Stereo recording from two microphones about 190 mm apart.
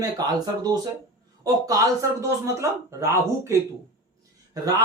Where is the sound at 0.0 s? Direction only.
20° right (ahead or behind).